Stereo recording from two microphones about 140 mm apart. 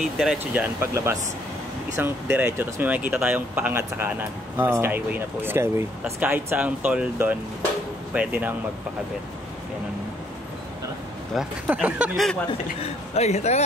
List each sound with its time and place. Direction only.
0.0 s speech: centre (ahead or behind)
0.5 s speech: 15° right (ahead or behind)
11.3 s speech: 10° right (ahead or behind)
12.8 s a man's voice: 50° left (ahead or behind)